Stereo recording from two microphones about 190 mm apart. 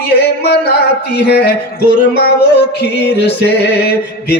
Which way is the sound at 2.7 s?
60° left (ahead or behind).